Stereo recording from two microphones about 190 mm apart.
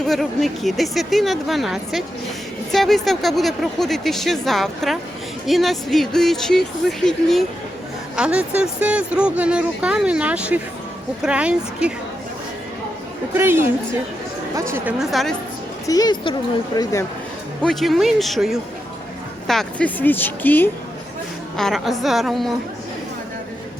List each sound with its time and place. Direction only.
0.1 s speech: centre (ahead or behind)
13.3 s speech: 10° right (ahead or behind)
14.7 s speech: 5° right (ahead or behind)
15.9 s a woman's voice: 20° left (ahead or behind)
17.6 s speech: centre (ahead or behind)